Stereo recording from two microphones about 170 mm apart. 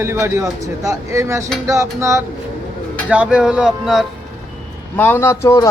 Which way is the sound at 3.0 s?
5° right (ahead or behind).